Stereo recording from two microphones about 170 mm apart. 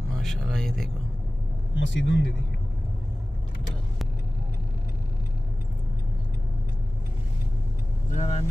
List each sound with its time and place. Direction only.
0.2 s speech: 5° left (ahead or behind)
1.8 s speech: 90° left
8.1 s speech: 40° left (ahead or behind)